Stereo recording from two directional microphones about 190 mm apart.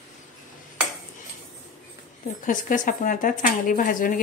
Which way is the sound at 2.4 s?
45° left (ahead or behind).